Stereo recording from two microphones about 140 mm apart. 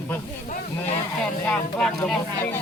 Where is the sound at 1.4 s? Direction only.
5° left (ahead or behind).